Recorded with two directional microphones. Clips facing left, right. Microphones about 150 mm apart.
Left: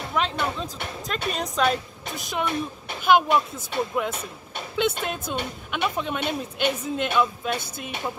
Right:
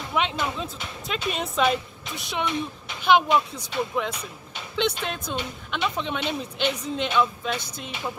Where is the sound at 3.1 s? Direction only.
5° left (ahead or behind).